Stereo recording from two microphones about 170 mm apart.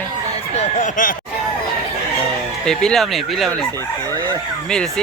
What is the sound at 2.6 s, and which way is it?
Speech, centre (ahead or behind).